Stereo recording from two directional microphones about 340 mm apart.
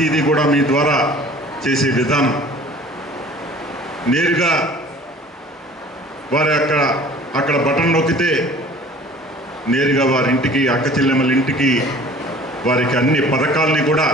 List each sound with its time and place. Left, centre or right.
0.0 s a man's voice: centre
4.0 s a man's voice: centre
6.3 s a man's voice: centre
9.7 s a man's voice: centre